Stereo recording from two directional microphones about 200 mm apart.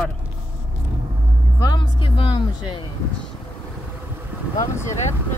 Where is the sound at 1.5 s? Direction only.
20° left (ahead or behind).